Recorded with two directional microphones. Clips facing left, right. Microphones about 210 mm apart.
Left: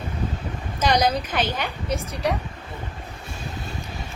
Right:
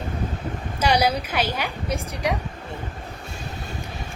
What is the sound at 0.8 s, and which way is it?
Speech, 10° right (ahead or behind).